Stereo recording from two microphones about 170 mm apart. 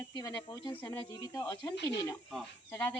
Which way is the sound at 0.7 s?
10° left (ahead or behind).